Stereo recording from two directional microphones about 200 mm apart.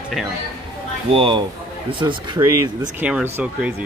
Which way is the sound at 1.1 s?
25° right (ahead or behind).